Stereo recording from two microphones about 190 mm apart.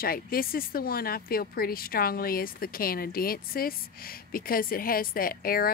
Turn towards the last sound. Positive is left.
turn(degrees=50)  # may be behind; listen again after turning